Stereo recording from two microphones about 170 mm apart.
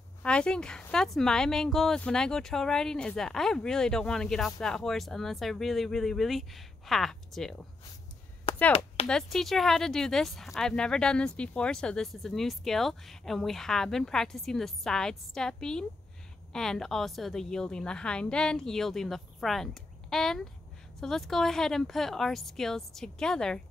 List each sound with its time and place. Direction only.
0.2 s speech: 5° left (ahead or behind)
8.5 s chop: 35° left (ahead or behind)
9.0 s speech: 5° left (ahead or behind)